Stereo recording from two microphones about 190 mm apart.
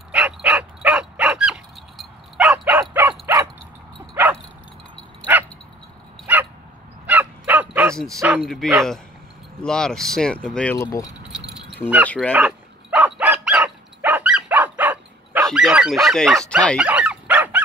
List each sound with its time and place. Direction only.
0.1 s dog: 5° right (ahead or behind)
4.1 s bow-wow: 10° right (ahead or behind)
6.3 s dog: 10° right (ahead or behind)
7.7 s bow-wow: 10° right (ahead or behind)
8.4 s speech: centre (ahead or behind)
12.1 s speech: 5° left (ahead or behind)
12.4 s dog: 10° right (ahead or behind)